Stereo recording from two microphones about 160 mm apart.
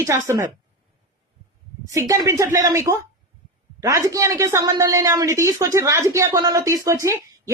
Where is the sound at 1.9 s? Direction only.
20° right (ahead or behind).